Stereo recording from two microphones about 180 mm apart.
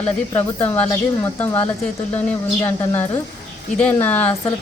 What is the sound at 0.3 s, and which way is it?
Speech, 10° left (ahead or behind).